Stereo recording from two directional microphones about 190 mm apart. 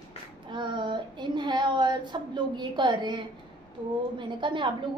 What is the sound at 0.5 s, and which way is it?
Child singing, 25° right (ahead or behind).